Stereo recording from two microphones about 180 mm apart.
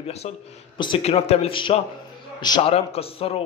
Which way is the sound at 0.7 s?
25° left (ahead or behind).